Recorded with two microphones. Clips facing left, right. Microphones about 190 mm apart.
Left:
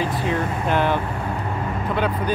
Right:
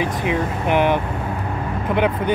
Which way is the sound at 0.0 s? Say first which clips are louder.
Right 2 dB; 15° right (ahead or behind).